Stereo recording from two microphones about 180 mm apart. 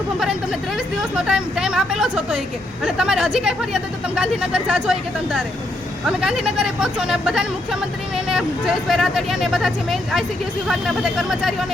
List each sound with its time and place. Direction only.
1.1 s speech: 5° right (ahead or behind)